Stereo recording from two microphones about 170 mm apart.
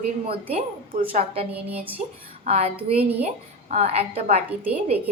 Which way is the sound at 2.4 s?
40° right (ahead or behind).